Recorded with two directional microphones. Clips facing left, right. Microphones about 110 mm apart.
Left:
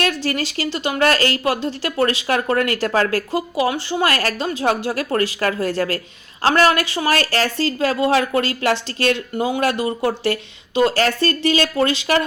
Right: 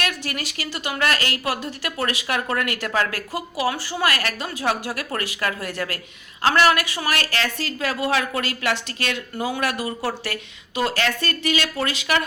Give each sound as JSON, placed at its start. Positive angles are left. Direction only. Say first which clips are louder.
{"t": 0.0, "sound": "speech", "louder": "left 7 dB", "side_deg": 30}